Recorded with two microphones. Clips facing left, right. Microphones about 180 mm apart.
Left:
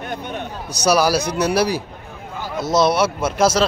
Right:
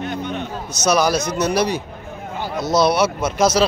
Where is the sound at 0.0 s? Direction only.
50° left (ahead or behind).